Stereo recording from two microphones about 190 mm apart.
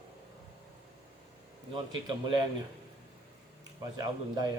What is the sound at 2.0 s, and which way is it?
Speech, 25° right (ahead or behind).